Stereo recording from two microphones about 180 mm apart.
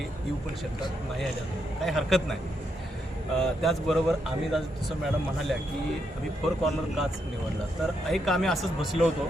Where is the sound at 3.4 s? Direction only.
Centre (ahead or behind).